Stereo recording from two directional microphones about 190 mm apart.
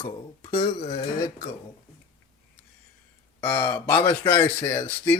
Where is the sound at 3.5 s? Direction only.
20° left (ahead or behind).